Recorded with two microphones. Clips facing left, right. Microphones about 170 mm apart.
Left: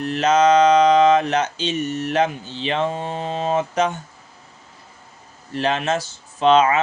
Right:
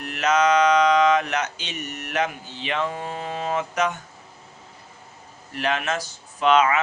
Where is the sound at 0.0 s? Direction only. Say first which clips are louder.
Left 4 dB; 30° left (ahead or behind).